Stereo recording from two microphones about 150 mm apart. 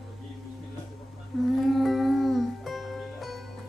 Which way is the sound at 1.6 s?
Centre (ahead or behind).